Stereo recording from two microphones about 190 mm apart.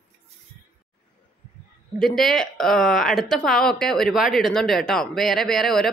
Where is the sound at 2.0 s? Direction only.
Centre (ahead or behind).